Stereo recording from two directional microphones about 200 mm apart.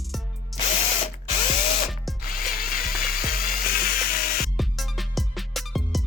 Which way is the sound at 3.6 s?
45° left (ahead or behind).